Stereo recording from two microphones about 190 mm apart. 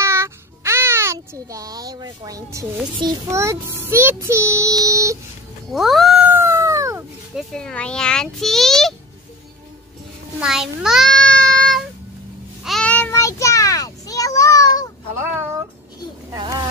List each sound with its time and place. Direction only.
0.0 s child singing: 15° right (ahead or behind)
3.0 s a child's voice: 20° right (ahead or behind)
5.7 s cat: centre (ahead or behind)
6.2 s a sound: 15° right (ahead or behind)
7.3 s a child's voice: 5° left (ahead or behind)
10.4 s child singing: 5° right (ahead or behind); by 14.9 s 20° left (ahead or behind)
16.3 s a sound: 20° right (ahead or behind)